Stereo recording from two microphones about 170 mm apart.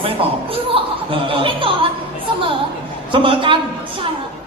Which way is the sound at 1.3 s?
30° right (ahead or behind).